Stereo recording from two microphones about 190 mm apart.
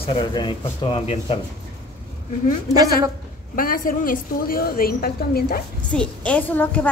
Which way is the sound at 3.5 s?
45° left (ahead or behind).